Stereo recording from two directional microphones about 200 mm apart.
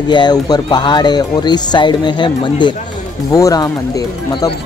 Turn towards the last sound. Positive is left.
turn(degrees=20)  # may be behind; listen again after turning